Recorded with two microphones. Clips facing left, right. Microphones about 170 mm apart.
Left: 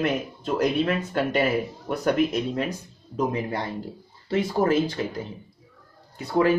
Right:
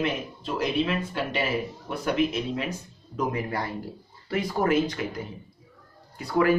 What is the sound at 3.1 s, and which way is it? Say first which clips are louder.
Speech: left 2 dB; 25° left (ahead or behind).